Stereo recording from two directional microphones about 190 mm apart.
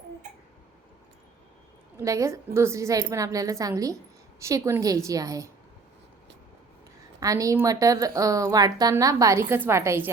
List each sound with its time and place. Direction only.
2.0 s a woman's voice: 15° right (ahead or behind)
7.2 s a woman's voice: 15° right (ahead or behind)